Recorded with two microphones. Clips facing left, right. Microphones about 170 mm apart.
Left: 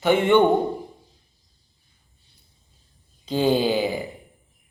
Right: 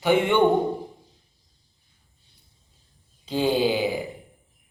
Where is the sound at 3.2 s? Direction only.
10° right (ahead or behind).